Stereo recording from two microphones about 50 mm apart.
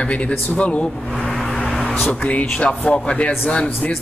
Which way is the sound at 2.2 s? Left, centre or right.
Left.